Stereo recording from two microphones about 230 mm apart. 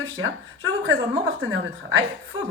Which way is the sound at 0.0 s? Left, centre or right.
Right.